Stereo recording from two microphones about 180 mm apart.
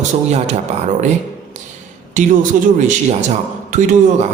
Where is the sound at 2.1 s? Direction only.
45° right (ahead or behind).